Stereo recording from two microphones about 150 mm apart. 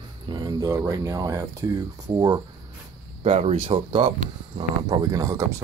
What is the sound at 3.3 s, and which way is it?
Speech, 45° right (ahead or behind).